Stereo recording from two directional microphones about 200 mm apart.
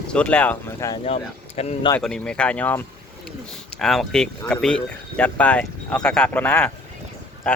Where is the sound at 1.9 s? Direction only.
5° left (ahead or behind).